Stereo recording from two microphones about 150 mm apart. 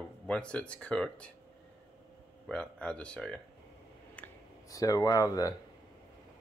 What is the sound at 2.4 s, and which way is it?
Speech, 5° left (ahead or behind).